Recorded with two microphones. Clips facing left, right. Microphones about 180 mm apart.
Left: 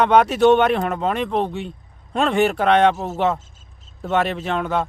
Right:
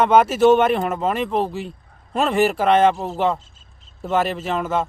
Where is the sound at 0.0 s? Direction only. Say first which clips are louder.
Even; centre (ahead or behind).